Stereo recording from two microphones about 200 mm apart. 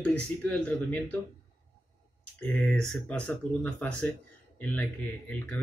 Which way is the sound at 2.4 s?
5° left (ahead or behind).